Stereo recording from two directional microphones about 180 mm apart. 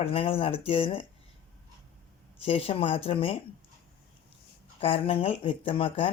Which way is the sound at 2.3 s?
30° left (ahead or behind).